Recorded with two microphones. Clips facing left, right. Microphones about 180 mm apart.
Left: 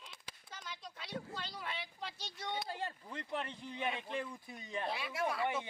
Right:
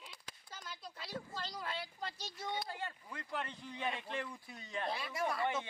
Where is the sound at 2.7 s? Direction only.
30° left (ahead or behind).